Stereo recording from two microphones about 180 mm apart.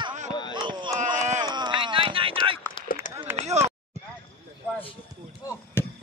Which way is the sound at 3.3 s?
40° right (ahead or behind).